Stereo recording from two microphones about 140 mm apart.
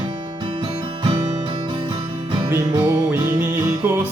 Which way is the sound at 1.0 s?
35° right (ahead or behind).